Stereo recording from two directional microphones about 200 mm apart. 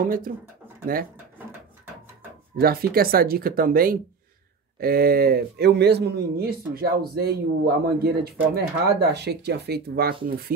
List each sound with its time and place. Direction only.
0.0 s a man's voice: 45° right (ahead or behind)
2.5 s a man's voice: 50° right (ahead or behind)